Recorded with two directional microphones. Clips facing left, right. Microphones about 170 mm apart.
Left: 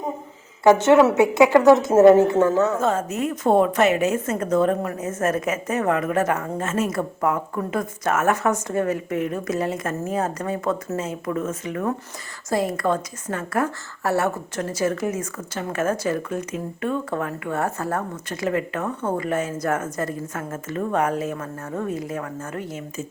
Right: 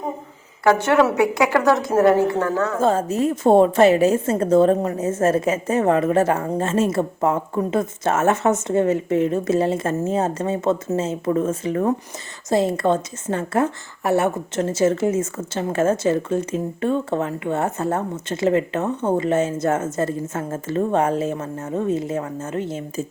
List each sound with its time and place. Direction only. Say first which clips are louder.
0.6 s a woman's voice: left 2 dB; 20° left (ahead or behind)
2.7 s a woman's voice: right 3 dB; 30° right (ahead or behind)